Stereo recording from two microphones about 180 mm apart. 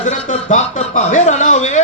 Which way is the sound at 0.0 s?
45° left (ahead or behind).